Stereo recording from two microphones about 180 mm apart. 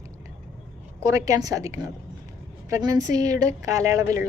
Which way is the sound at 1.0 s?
20° right (ahead or behind).